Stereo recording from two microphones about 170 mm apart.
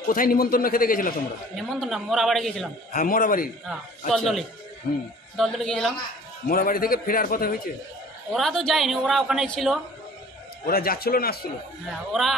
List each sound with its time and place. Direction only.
0.1 s a man's voice: 55° left (ahead or behind)
1.6 s a man's voice: centre (ahead or behind)
2.9 s a man's voice: 50° left (ahead or behind)
4.1 s a man's voice: centre (ahead or behind)
4.9 s a man's voice: 60° left (ahead or behind)
5.3 s a man's voice: centre (ahead or behind)
6.4 s a man's voice: 55° left (ahead or behind)
8.3 s a man's voice: centre (ahead or behind)
10.7 s a man's voice: 60° left (ahead or behind)
12.1 s a man's voice: centre (ahead or behind)